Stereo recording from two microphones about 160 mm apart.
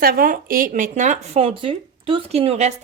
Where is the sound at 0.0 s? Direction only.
65° right (ahead or behind).